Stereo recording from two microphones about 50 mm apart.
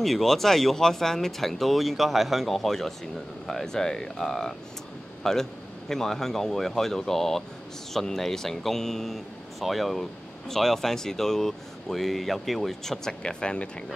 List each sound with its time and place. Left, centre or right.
0.0 s speech: centre
13.2 s speech: centre